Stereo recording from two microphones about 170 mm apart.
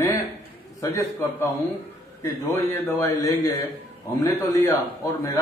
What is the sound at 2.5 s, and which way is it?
A man's voice, 15° left (ahead or behind).